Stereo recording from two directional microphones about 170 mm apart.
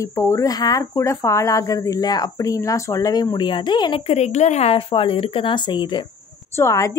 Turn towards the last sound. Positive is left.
turn(degrees=20)  # may be behind; listen again after turning